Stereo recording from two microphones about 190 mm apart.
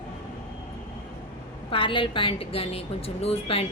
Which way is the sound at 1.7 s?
25° left (ahead or behind).